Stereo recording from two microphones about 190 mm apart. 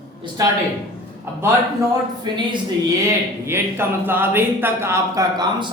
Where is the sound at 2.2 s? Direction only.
25° right (ahead or behind).